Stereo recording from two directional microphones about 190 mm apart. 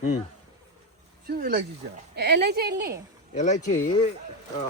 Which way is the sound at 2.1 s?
60° right (ahead or behind).